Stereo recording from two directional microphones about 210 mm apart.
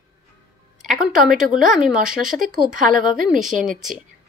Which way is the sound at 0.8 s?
Centre (ahead or behind).